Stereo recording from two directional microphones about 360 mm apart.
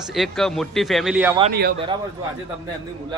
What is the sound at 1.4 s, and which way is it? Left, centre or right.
Speech, right.